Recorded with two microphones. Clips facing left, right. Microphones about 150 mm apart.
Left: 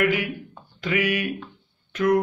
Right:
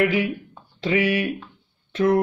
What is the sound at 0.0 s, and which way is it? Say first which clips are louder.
Speech: right 2 dB; 30° right (ahead or behind).